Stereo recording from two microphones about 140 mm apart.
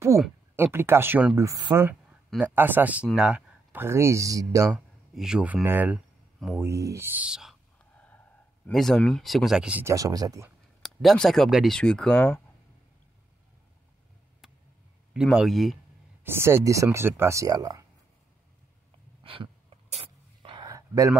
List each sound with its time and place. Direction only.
0.6 s speech: 15° right (ahead or behind)
1.7 s speech: 15° right (ahead or behind)
4.6 s speech: 5° right (ahead or behind)
7.8 s gasp: 10° left (ahead or behind)
8.6 s speech: 5° left (ahead or behind)
9.9 s speech: 25° right (ahead or behind)
10.8 s speech: centre (ahead or behind)
15.1 s speech: 5° right (ahead or behind)
16.3 s speech: 15° right (ahead or behind)
19.2 s sneeze: 40° right (ahead or behind)
20.6 s a sound: 25° right (ahead or behind)